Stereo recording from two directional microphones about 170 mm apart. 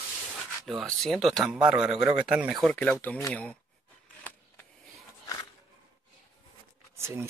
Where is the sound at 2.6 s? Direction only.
5° left (ahead or behind).